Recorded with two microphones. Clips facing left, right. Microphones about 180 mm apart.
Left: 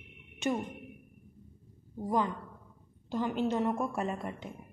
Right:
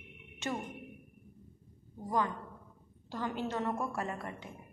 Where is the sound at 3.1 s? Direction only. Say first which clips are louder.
Left 5 dB; 15° left (ahead or behind).